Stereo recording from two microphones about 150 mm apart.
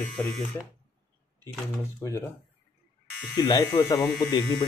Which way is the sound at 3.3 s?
25° left (ahead or behind).